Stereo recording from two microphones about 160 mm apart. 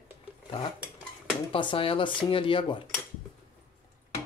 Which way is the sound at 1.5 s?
30° left (ahead or behind).